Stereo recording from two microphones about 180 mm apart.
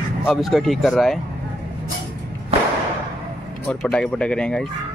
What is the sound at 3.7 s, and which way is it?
Speech, 5° left (ahead or behind).